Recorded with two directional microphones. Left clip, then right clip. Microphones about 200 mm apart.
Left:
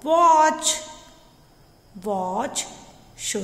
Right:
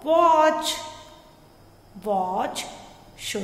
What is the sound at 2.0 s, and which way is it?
A woman's voice, 30° left (ahead or behind).